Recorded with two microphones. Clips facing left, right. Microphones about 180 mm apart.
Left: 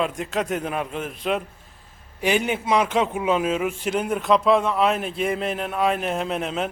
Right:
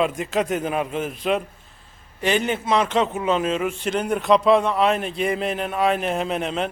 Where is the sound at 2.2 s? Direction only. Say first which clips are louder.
Even; 10° left (ahead or behind).